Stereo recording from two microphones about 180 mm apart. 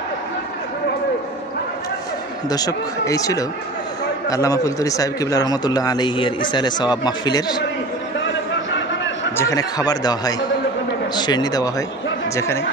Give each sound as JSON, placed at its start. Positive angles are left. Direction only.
{"t": 2.5, "sound": "a man's voice", "side_deg": 20}
{"t": 8.2, "sound": "a sound", "side_deg": 90}
{"t": 9.4, "sound": "a man's voice", "side_deg": 20}